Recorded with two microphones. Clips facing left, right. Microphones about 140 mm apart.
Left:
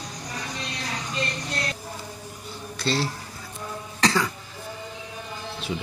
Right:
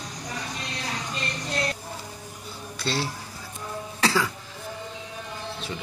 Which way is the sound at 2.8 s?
Centre (ahead or behind).